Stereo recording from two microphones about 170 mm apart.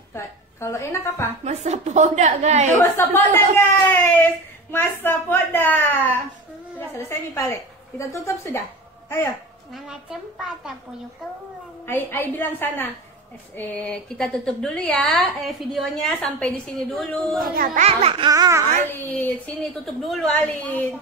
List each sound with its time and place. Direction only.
0.1 s a woman's voice: 15° left (ahead or behind)
1.4 s a woman's voice: 40° right (ahead or behind)
2.8 s a woman's voice: 15° left (ahead or behind)
9.8 s a woman's voice: 5° right (ahead or behind)
11.8 s a woman's voice: 10° left (ahead or behind)
17.8 s speech: 35° right (ahead or behind)
18.9 s a woman's voice: 10° left (ahead or behind)